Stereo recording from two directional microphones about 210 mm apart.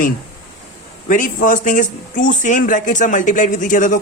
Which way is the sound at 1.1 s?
40° left (ahead or behind).